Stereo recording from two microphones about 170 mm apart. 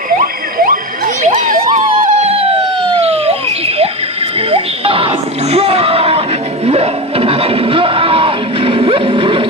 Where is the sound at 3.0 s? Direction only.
35° right (ahead or behind).